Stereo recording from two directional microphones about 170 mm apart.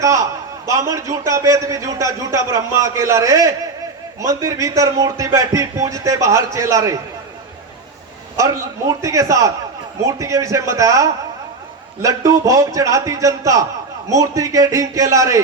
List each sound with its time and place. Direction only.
0.0 s a man's voice: 20° right (ahead or behind)
8.4 s a man's voice: 20° right (ahead or behind)